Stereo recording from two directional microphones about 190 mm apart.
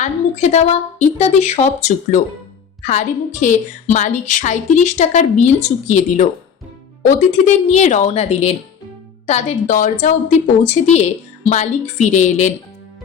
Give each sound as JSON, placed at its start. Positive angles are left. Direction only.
{"t": 0.0, "sound": "a woman's voice", "side_deg": 35}
{"t": 3.4, "sound": "a woman's voice", "side_deg": 40}